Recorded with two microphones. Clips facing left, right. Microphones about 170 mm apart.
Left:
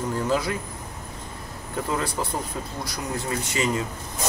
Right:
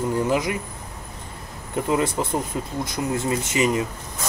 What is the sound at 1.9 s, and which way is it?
Speech, 15° right (ahead or behind).